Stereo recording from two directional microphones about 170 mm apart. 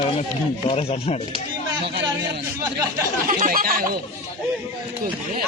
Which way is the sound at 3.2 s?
50° right (ahead or behind).